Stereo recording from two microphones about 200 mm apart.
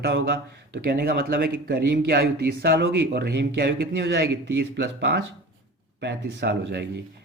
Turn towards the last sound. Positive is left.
turn(degrees=-55)  # may be behind; listen again after turning